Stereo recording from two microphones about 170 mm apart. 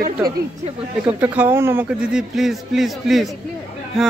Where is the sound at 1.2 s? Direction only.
10° right (ahead or behind).